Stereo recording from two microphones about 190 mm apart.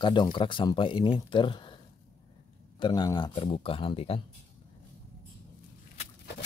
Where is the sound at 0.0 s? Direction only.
25° left (ahead or behind).